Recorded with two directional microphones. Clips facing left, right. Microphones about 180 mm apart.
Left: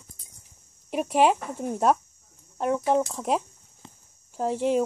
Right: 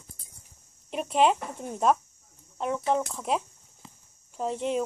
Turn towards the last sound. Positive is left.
turn(degrees=10)  # may be behind; listen again after turning